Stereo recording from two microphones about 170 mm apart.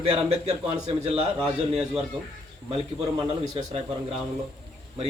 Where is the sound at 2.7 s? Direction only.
35° right (ahead or behind).